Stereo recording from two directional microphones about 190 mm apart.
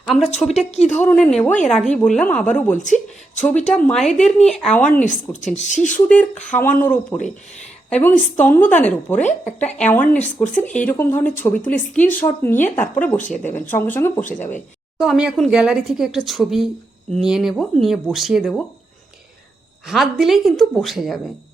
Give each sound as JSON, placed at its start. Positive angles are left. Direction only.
{"t": 0.0, "sound": "speech", "side_deg": 0}
{"t": 0.3, "sound": "a woman's voice", "side_deg": 35}
{"t": 1.0, "sound": "speech", "side_deg": 5}
{"t": 2.7, "sound": "a woman's voice", "side_deg": 40}
{"t": 3.7, "sound": "speech", "side_deg": 5}
{"t": 5.0, "sound": "a woman's voice", "side_deg": 40}
{"t": 6.1, "sound": "a woman's voice", "side_deg": 5}
{"t": 14.9, "sound": "speech", "side_deg": -5}
{"t": 19.9, "sound": "speech", "side_deg": 0}